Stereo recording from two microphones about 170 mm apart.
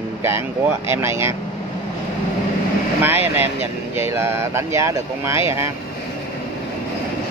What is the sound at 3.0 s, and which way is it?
A man's voice, 10° right (ahead or behind).